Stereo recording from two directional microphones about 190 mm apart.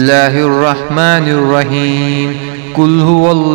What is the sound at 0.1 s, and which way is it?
Speech, 35° right (ahead or behind).